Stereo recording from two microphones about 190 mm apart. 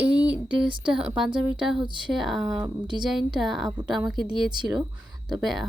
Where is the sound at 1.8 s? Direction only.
25° right (ahead or behind).